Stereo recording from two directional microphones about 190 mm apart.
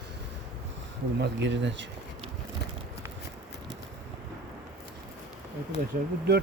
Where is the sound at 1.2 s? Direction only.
70° right (ahead or behind).